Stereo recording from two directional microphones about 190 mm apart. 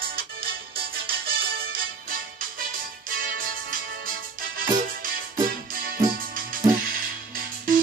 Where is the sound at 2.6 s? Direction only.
50° right (ahead or behind).